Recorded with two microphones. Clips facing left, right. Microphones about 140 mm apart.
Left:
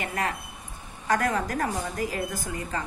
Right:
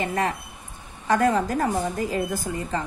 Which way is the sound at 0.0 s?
30° right (ahead or behind).